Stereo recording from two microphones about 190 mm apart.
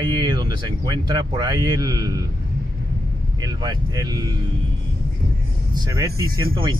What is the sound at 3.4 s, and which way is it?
Speech, 20° right (ahead or behind).